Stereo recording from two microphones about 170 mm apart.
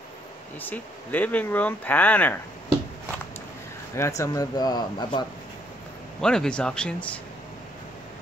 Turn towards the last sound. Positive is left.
turn(degrees=5)  # may be behind; listen again after turning